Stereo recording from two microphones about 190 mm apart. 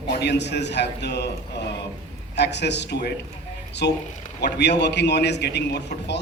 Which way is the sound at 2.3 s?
65° left (ahead or behind).